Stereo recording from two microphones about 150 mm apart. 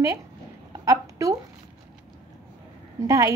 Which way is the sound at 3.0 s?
20° right (ahead or behind).